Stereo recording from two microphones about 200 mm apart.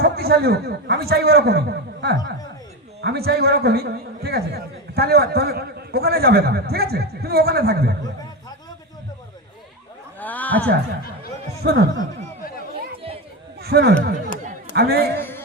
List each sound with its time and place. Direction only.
0.0 s a man's voice: 50° right (ahead or behind)
10.2 s a sound: 10° left (ahead or behind)
11.6 s speech: 55° right (ahead or behind)
13.6 s a man's voice: 50° right (ahead or behind)
15.1 s music: 10° left (ahead or behind)